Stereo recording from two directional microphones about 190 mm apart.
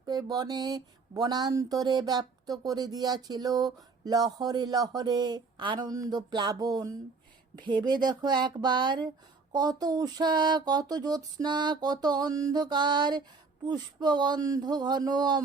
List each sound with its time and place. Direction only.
0.0 s speech: 20° right (ahead or behind)